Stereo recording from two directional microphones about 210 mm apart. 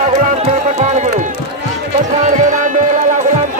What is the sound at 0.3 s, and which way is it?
Music, 30° right (ahead or behind).